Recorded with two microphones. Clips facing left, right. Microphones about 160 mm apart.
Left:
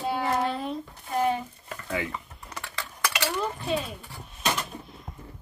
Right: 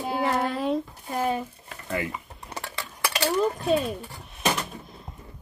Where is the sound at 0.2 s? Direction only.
80° right.